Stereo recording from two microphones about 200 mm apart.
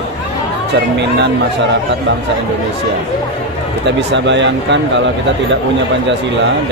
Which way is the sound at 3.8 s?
60° right (ahead or behind).